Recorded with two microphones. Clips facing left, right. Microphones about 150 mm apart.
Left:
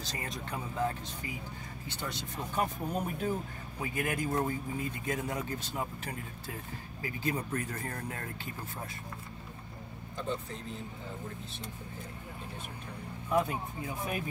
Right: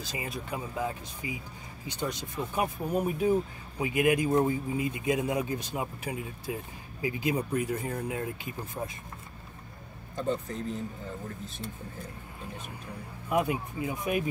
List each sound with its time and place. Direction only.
0.0 s speech: 10° right (ahead or behind)
10.1 s speech: 45° right (ahead or behind)
13.3 s speech: 15° right (ahead or behind)